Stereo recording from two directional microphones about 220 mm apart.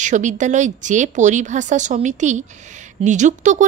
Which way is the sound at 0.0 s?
35° right (ahead or behind).